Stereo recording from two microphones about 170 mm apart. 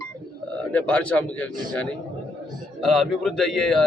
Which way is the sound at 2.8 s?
Centre (ahead or behind).